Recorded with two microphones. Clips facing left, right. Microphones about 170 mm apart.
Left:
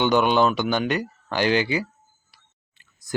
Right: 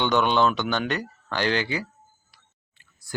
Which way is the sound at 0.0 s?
10° left (ahead or behind).